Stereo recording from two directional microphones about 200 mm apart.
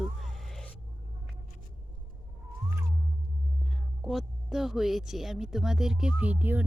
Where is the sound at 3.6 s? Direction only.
Centre (ahead or behind).